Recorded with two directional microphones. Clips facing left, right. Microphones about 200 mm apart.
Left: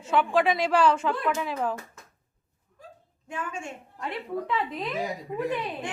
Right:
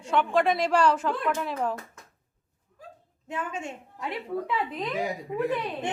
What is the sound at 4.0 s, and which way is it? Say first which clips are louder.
Speech: even; 5° right (ahead or behind).